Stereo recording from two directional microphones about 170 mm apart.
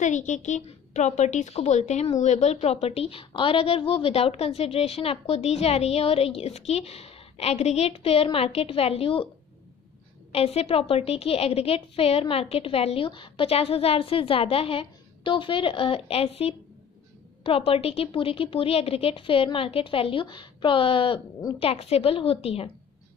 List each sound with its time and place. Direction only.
0.0 s a woman's voice: 45° left (ahead or behind)
10.3 s a woman's voice: 35° left (ahead or behind)